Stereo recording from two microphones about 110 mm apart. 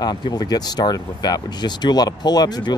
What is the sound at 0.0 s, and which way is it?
Speech, 40° left (ahead or behind).